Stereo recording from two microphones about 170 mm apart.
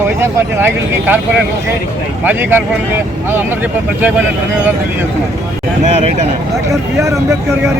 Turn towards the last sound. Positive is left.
turn(degrees=-15)  # may be behind; listen again after turning